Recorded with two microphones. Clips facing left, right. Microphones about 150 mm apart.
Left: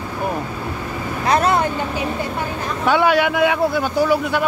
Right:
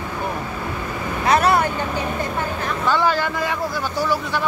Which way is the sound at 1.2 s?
25° left (ahead or behind).